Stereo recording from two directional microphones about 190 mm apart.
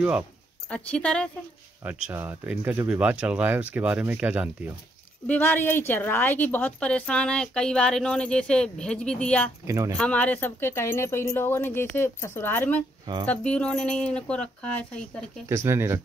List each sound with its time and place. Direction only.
0.7 s speech: 5° left (ahead or behind)
2.0 s speech: 10° right (ahead or behind)
5.2 s speech: 10° left (ahead or behind)
9.7 s speech: 15° right (ahead or behind)
9.9 s speech: 5° left (ahead or behind)
13.0 s speech: 20° right (ahead or behind)
13.3 s speech: 5° left (ahead or behind)
15.4 s speech: 15° right (ahead or behind)